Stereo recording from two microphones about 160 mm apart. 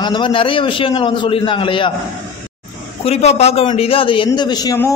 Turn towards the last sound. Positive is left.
turn(degrees=25)  # may be behind; listen again after turning